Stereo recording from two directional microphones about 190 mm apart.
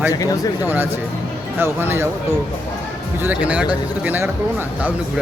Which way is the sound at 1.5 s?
10° right (ahead or behind).